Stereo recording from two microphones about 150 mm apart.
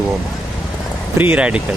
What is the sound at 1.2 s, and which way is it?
Speech, 10° right (ahead or behind).